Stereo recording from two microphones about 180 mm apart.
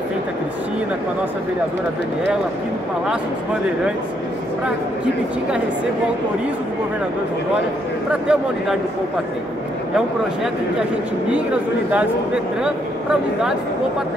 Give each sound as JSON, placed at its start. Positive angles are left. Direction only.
{"t": 8.1, "sound": "speech", "side_deg": -5}
{"t": 12.6, "sound": "speech", "side_deg": -5}